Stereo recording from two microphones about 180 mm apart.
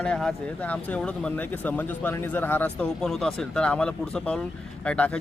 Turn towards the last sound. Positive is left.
turn(degrees=5)  # may be behind; listen again after turning